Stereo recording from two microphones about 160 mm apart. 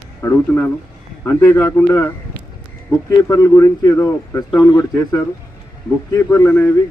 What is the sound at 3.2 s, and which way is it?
Speech, 20° left (ahead or behind).